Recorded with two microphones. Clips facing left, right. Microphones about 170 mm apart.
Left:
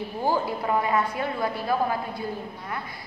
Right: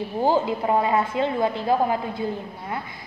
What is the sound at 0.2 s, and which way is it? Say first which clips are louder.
A woman's voice: right 4 dB; 20° right (ahead or behind).